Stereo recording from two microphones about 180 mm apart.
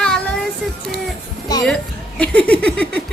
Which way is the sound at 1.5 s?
20° left (ahead or behind).